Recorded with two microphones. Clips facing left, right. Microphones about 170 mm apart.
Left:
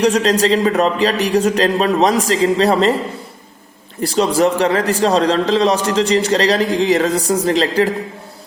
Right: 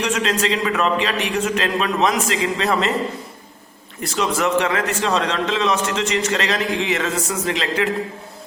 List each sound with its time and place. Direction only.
0.0 s a man's voice: 35° left (ahead or behind)
4.0 s a man's voice: 35° left (ahead or behind)